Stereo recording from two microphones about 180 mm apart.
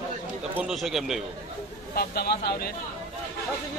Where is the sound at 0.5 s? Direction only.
Centre (ahead or behind).